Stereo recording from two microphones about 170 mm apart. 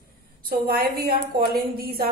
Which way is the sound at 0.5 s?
60° right (ahead or behind).